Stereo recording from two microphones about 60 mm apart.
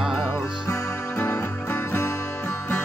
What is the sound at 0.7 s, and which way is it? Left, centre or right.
Music, left.